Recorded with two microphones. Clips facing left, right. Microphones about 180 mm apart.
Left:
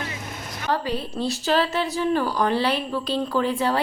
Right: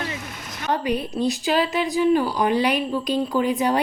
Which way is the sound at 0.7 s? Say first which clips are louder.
Right 2 dB; 15° right (ahead or behind).